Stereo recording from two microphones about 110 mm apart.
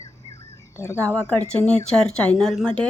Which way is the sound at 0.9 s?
25° right (ahead or behind).